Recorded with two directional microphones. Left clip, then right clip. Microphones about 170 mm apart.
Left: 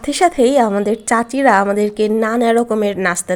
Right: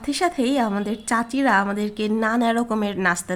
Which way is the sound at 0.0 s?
25° left (ahead or behind).